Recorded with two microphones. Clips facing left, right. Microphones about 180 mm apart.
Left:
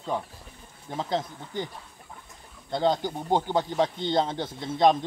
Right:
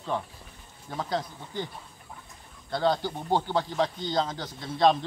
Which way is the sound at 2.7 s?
20° left (ahead or behind).